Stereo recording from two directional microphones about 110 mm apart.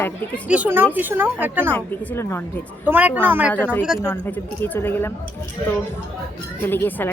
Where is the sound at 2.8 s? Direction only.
15° right (ahead or behind).